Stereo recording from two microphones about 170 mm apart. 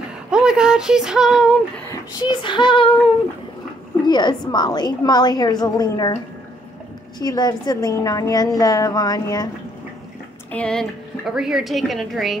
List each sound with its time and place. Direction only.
0.3 s speech: 5° right (ahead or behind)
1.9 s a woman's voice: 25° left (ahead or behind)
4.0 s a woman's voice: 25° left (ahead or behind)
7.2 s a woman's voice: 25° left (ahead or behind)
10.5 s a woman's voice: 5° left (ahead or behind)